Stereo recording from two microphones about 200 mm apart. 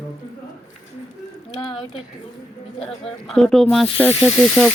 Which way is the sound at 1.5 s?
25° left (ahead or behind).